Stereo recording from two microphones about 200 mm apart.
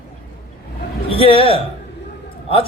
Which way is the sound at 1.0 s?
30° left (ahead or behind).